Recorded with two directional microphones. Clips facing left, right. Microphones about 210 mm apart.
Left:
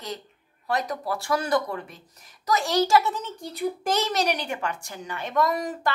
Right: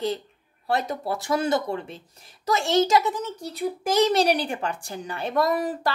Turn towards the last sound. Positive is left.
turn(degrees=-35)  # may be behind; listen again after turning